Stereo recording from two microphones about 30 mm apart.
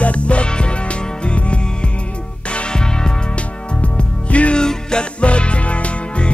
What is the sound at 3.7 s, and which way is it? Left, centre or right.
Music, left.